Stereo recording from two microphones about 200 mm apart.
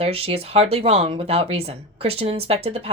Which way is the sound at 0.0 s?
30° right (ahead or behind).